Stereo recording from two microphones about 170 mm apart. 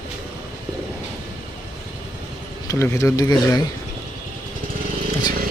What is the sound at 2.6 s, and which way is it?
Speech, 15° left (ahead or behind).